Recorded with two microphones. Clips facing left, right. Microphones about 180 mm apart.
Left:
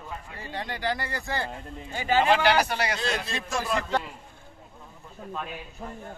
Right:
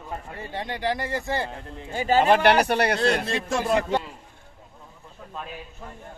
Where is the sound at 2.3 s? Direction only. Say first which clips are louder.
Right 4 dB; 60° right (ahead or behind).